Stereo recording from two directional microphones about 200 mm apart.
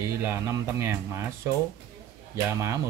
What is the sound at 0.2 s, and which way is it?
Speech, 10° right (ahead or behind).